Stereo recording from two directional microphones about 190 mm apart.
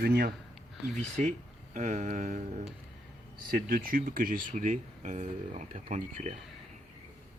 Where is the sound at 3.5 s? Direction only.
50° right (ahead or behind).